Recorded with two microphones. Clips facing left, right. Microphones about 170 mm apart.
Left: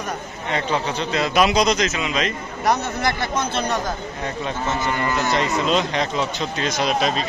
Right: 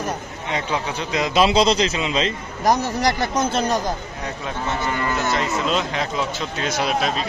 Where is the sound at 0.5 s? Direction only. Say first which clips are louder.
Left 2 dB; 10° right (ahead or behind).